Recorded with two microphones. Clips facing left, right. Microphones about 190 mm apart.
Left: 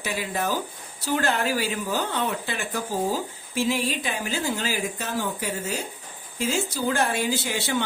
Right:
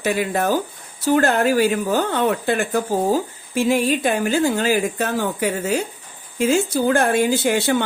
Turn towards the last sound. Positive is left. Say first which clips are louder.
# right 8 dB
turn(degrees=-55)  # may be behind; listen again after turning